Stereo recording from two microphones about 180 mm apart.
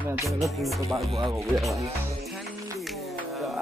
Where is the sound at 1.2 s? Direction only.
25° right (ahead or behind).